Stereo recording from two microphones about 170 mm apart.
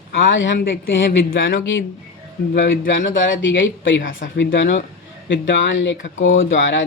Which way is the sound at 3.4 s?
90° left.